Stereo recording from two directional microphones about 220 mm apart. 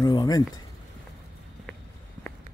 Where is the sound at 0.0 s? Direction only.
15° left (ahead or behind).